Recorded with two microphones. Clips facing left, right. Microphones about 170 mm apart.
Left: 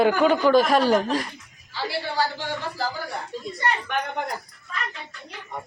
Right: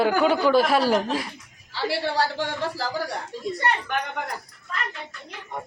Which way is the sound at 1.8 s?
70° right (ahead or behind).